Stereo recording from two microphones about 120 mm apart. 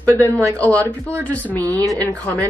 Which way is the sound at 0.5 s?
15° left (ahead or behind).